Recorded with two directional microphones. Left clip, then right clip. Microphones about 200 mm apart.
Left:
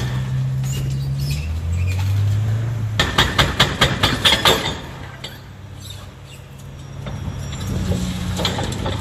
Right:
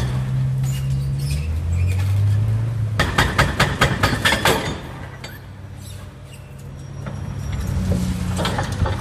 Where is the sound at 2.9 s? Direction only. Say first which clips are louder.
Left 2 dB; centre (ahead or behind).